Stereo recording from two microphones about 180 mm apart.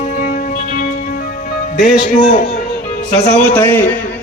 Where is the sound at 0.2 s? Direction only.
50° left (ahead or behind).